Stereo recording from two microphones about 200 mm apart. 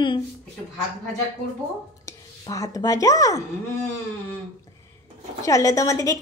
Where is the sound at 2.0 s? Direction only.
15° left (ahead or behind).